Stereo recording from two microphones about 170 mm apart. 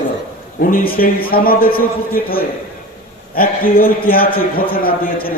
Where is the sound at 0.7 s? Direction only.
60° left (ahead or behind).